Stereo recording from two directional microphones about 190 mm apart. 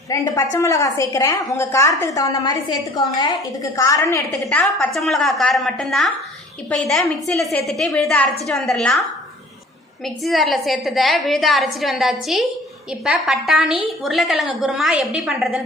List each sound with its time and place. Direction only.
0.1 s a woman's voice: 15° left (ahead or behind)
4.4 s a woman's voice: 5° left (ahead or behind)
10.2 s a woman's voice: centre (ahead or behind)